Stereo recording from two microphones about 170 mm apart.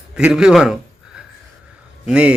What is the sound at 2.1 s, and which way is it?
Speech, 5° right (ahead or behind).